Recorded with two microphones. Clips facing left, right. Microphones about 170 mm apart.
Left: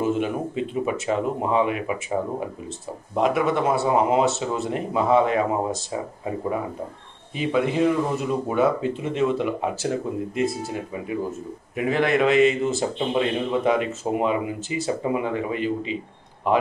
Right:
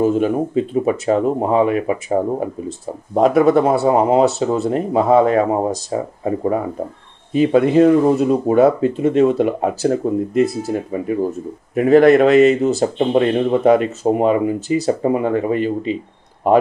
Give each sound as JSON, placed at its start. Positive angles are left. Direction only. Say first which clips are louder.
{"t": 0.0, "sound": "speech", "louder": "right 7 dB", "side_deg": -40}